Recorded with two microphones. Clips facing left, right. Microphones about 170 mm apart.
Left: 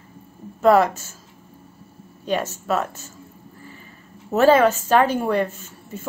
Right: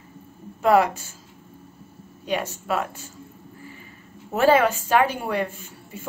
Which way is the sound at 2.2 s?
15° right (ahead or behind).